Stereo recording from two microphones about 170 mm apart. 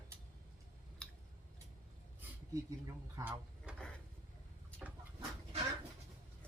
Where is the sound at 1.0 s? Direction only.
5° left (ahead or behind).